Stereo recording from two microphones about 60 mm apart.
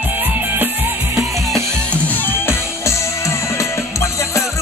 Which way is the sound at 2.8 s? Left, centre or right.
Left.